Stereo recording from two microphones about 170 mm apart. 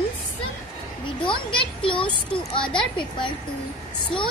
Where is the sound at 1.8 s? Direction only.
30° left (ahead or behind).